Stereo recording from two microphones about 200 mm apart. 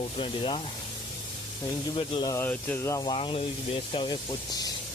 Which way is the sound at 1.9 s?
25° left (ahead or behind).